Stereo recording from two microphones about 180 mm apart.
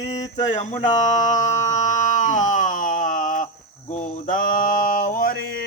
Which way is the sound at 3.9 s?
50° left (ahead or behind).